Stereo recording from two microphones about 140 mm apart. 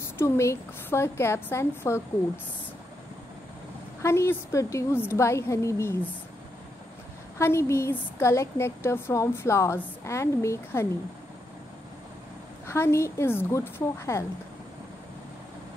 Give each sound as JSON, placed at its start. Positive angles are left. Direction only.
{"t": 0.2, "sound": "a woman's voice", "side_deg": 20}
{"t": 4.0, "sound": "a woman's voice", "side_deg": 20}
{"t": 7.3, "sound": "a woman's voice", "side_deg": 20}
{"t": 12.6, "sound": "a woman's voice", "side_deg": 20}